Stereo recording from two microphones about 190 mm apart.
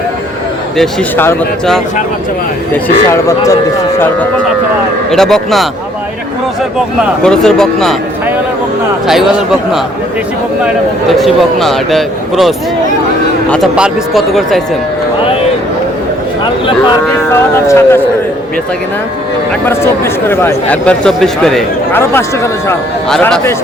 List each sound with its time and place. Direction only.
0.8 s a man's voice: 5° left (ahead or behind)
5.1 s a man's voice: centre (ahead or behind)
7.3 s a man's voice: centre (ahead or behind)
9.0 s a man's voice: centre (ahead or behind)
11.1 s a man's voice: centre (ahead or behind)
17.7 s speech: 10° left (ahead or behind)
19.6 s speech: 10° left (ahead or behind)
23.0 s a man's voice: 5° left (ahead or behind)